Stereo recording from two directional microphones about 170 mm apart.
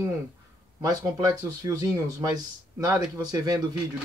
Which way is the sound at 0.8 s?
20° right (ahead or behind).